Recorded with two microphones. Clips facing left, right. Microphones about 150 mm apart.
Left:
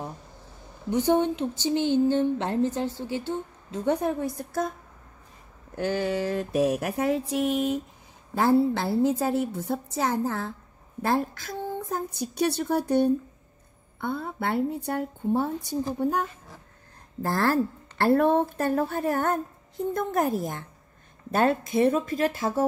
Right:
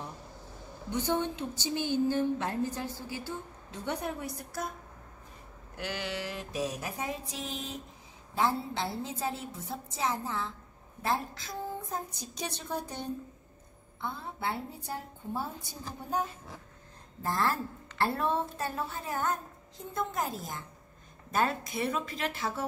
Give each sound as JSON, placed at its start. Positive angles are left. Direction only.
{"t": 0.9, "sound": "speech", "side_deg": 20}
{"t": 4.2, "sound": "speech", "side_deg": 50}
{"t": 5.8, "sound": "speech", "side_deg": 45}
{"t": 21.7, "sound": "speech", "side_deg": 50}